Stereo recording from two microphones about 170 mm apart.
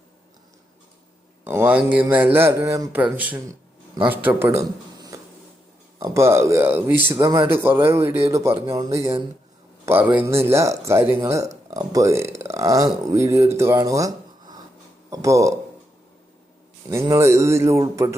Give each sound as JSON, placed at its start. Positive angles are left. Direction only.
{"t": 1.5, "sound": "a man's voice", "side_deg": -10}
{"t": 16.9, "sound": "speech", "side_deg": -15}